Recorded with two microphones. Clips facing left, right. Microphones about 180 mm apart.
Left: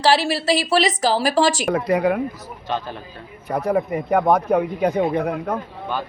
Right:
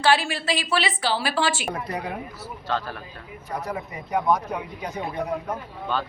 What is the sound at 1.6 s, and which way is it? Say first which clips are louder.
Speech: left 11 dB; 90° left.